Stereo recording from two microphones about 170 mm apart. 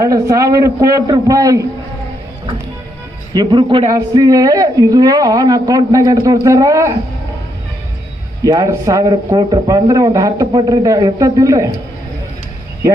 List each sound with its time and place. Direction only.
0.0 s a man's voice: 20° right (ahead or behind)
3.3 s a man's voice: 30° right (ahead or behind)
8.4 s a man's voice: 20° right (ahead or behind)